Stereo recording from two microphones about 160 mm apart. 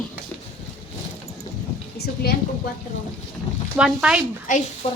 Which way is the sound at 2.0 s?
90° left.